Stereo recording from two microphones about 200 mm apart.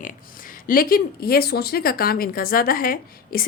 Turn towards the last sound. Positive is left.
turn(degrees=45)  # may be behind; listen again after turning